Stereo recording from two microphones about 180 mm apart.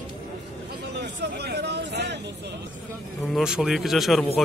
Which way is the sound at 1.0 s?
65° right (ahead or behind).